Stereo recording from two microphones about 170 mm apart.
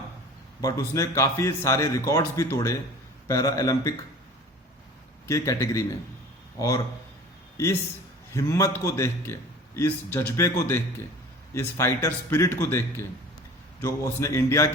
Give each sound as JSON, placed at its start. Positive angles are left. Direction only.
{"t": 0.6, "sound": "a man's voice", "side_deg": 20}
{"t": 5.3, "sound": "a man's voice", "side_deg": 15}
{"t": 11.5, "sound": "a man's voice", "side_deg": 15}